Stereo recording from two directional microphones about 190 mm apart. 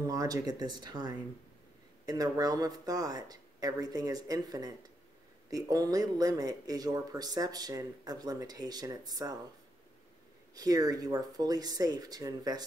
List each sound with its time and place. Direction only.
0.0 s speech: 20° right (ahead or behind)
10.5 s speech: 20° right (ahead or behind)